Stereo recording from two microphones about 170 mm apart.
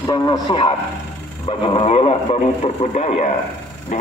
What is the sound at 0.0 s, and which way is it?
Speech, 25° left (ahead or behind).